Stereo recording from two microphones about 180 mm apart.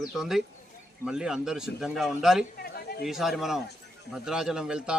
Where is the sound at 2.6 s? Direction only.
60° left (ahead or behind).